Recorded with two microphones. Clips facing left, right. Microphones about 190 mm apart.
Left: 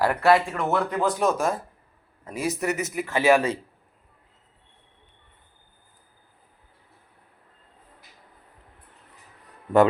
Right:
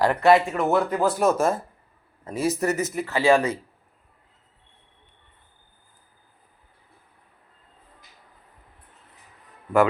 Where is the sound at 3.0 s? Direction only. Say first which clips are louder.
Even; 20° left (ahead or behind).